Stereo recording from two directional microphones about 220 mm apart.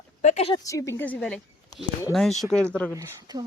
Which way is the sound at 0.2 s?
30° left (ahead or behind).